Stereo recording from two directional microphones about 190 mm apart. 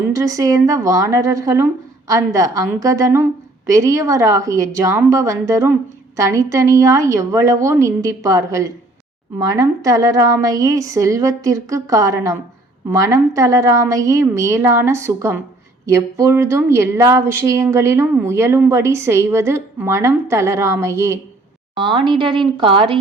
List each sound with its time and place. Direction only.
0.0 s a woman's voice: 15° right (ahead or behind)